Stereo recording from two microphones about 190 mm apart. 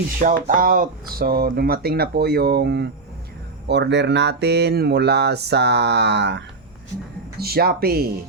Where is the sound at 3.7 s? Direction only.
65° right (ahead or behind).